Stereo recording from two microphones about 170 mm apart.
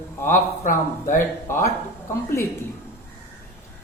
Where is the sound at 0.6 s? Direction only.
50° left (ahead or behind).